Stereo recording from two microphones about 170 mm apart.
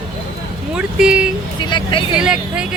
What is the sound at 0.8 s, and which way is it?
Speech, 5° right (ahead or behind).